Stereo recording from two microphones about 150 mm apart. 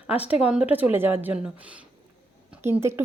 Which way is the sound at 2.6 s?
15° right (ahead or behind).